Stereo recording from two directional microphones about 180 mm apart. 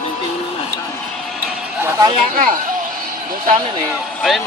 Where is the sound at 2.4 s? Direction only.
50° right (ahead or behind).